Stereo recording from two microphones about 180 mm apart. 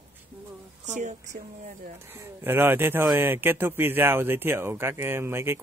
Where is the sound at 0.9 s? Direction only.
40° right (ahead or behind).